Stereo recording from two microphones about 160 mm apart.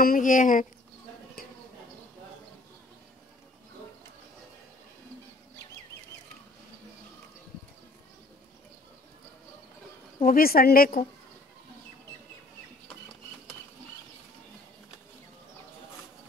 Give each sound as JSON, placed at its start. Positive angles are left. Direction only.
{"t": 0.0, "sound": "a woman's voice", "side_deg": 60}
{"t": 10.2, "sound": "a woman's voice", "side_deg": 65}